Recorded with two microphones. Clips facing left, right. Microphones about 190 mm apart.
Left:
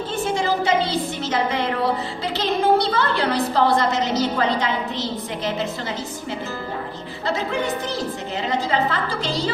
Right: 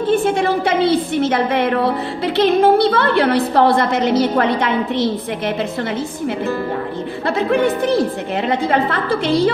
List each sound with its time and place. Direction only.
0.1 s a woman's voice: 55° right (ahead or behind)
7.2 s a woman's voice: 55° right (ahead or behind)